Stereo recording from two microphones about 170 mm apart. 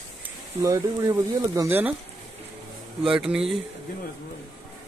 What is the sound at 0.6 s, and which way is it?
Speech, 15° right (ahead or behind).